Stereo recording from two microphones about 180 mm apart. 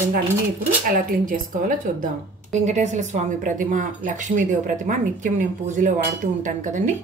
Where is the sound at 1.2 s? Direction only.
50° right (ahead or behind).